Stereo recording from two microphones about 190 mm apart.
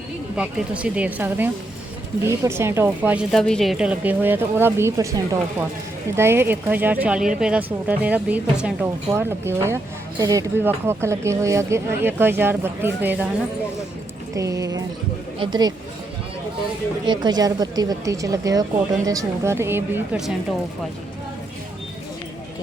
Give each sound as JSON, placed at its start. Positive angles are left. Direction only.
{"t": 0.3, "sound": "speech", "side_deg": -5}
{"t": 3.3, "sound": "speech", "side_deg": 5}
{"t": 14.3, "sound": "speech", "side_deg": -15}
{"t": 17.1, "sound": "speech", "side_deg": -20}